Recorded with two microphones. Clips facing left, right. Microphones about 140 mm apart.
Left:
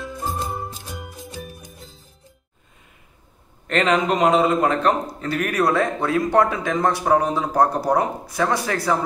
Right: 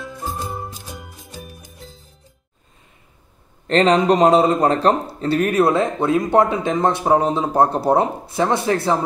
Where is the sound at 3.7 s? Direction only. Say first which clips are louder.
Right 5 dB; 30° right (ahead or behind).